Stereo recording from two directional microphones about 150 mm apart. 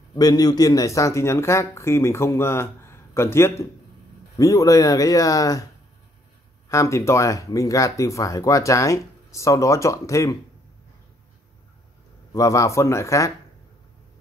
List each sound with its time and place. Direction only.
0.1 s a man's voice: 25° left (ahead or behind)
6.7 s speech: 20° left (ahead or behind)
12.4 s speech: 20° left (ahead or behind)